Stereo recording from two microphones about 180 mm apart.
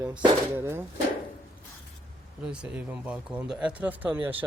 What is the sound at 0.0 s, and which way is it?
Speech, 10° right (ahead or behind).